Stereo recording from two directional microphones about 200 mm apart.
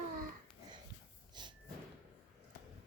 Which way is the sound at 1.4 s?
20° right (ahead or behind).